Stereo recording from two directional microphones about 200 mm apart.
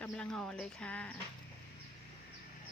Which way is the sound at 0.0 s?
5° left (ahead or behind).